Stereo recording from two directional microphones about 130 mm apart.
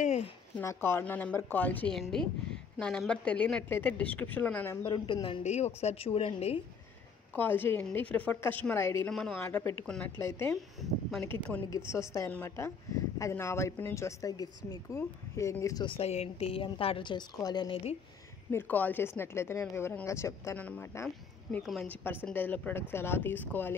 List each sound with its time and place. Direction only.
0.6 s a woman's voice: 20° left (ahead or behind)
2.0 s a woman's voice: centre (ahead or behind)
4.8 s a woman's voice: 40° left (ahead or behind)
5.4 s a woman's voice: 60° left (ahead or behind)
7.3 s a woman's voice: 15° left (ahead or behind)
9.1 s a woman's voice: 5° left (ahead or behind)
9.4 s speech: 20° left (ahead or behind)
9.8 s a woman's voice: 5° left (ahead or behind)
10.1 s a woman's voice: 15° left (ahead or behind)
10.5 s speech: centre (ahead or behind)
11.7 s speech: 25° left (ahead or behind)
15.8 s a woman's voice: 45° left (ahead or behind)
18.5 s speech: 15° left (ahead or behind)
20.5 s a woman's voice: 10° left (ahead or behind)